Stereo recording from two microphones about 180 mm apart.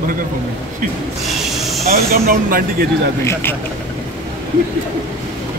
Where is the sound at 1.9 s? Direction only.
55° right (ahead or behind).